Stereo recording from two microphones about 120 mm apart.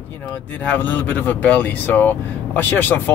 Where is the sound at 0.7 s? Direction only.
15° left (ahead or behind).